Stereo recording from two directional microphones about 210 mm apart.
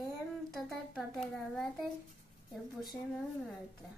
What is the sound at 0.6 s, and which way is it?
A woman's voice, centre (ahead or behind).